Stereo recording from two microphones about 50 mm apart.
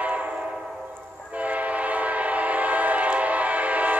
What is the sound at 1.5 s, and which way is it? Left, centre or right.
Train, right.